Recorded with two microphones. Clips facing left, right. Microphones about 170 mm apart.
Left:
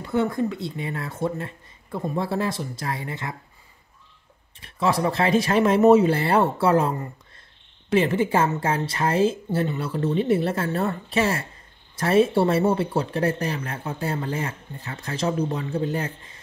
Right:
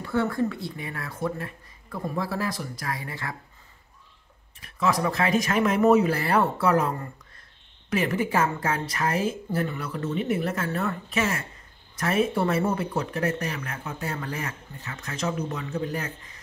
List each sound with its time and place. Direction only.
0.0 s a woman's voice: 20° left (ahead or behind)
4.6 s a woman's voice: 30° left (ahead or behind)